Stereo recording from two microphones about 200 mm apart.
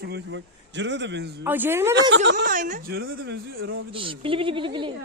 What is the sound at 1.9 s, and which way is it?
Speech, 65° right (ahead or behind).